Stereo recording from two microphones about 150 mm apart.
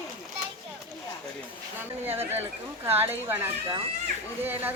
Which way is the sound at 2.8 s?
15° right (ahead or behind).